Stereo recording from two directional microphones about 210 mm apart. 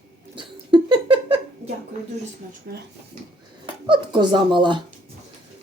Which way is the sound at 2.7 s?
50° right (ahead or behind).